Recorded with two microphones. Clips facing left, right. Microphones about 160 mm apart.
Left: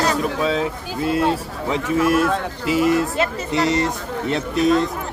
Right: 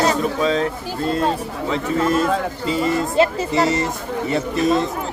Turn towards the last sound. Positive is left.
turn(degrees=0)  # may be behind; listen again after turning